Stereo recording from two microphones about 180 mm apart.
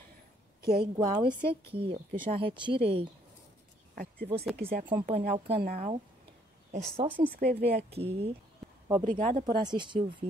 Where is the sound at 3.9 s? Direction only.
55° right (ahead or behind).